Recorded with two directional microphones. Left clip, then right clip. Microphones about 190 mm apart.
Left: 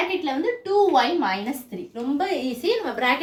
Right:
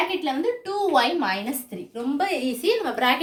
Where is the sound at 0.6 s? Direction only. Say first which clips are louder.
Left 4 dB; 35° right (ahead or behind).